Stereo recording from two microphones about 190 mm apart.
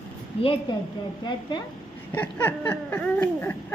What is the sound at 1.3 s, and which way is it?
Speech, 25° left (ahead or behind).